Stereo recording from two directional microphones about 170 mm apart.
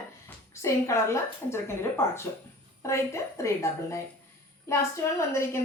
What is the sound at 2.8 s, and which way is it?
A woman's voice, 15° left (ahead or behind).